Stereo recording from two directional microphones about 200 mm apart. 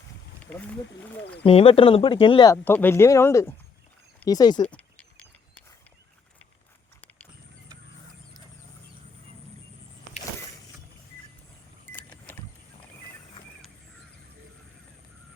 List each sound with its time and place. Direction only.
0.5 s speech: 5° left (ahead or behind)
1.5 s speech: 30° left (ahead or behind)
4.6 s a sound: 5° left (ahead or behind)
11.9 s vehicle: 10° left (ahead or behind)